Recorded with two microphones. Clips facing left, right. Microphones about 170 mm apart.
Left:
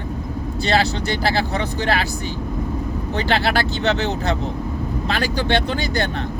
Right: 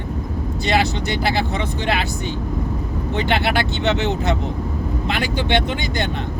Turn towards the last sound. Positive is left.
turn(degrees=-20)  # may be behind; listen again after turning